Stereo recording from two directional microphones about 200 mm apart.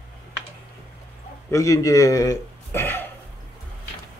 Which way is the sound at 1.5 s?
15° left (ahead or behind).